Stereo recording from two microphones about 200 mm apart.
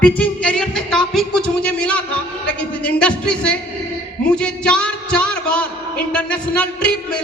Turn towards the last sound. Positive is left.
turn(degrees=5)  # may be behind; listen again after turning